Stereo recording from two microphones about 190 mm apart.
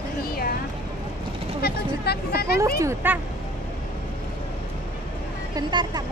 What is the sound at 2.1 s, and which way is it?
Speech, 55° left (ahead or behind).